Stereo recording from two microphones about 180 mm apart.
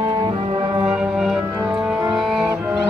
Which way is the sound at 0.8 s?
5° right (ahead or behind).